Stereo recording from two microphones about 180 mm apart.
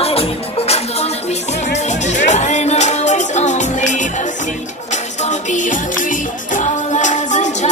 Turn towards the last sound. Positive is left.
turn(degrees=40)  # may be behind; listen again after turning